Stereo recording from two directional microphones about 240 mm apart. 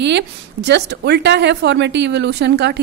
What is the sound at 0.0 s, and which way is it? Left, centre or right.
A woman's voice, right.